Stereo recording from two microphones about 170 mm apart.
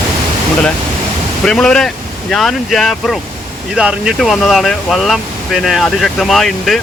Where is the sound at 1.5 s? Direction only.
5° left (ahead or behind).